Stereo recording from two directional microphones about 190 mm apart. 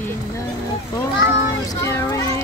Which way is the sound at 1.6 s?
15° left (ahead or behind).